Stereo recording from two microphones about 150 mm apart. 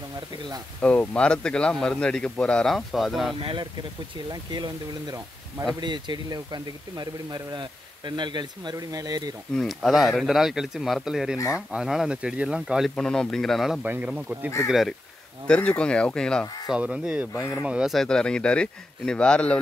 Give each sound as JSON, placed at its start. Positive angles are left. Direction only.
{"t": 0.7, "sound": "a man's voice", "side_deg": 10}
{"t": 3.3, "sound": "speech", "side_deg": -35}
{"t": 9.5, "sound": "speech", "side_deg": 0}
{"t": 13.8, "sound": "a man's voice", "side_deg": -10}
{"t": 16.7, "sound": "speech", "side_deg": -5}